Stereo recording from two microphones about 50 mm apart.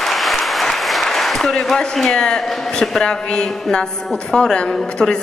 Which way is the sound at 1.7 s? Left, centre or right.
Centre.